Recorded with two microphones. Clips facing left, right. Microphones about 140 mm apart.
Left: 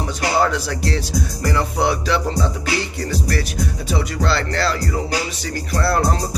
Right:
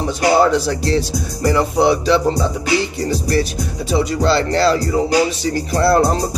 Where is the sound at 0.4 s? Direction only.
25° right (ahead or behind).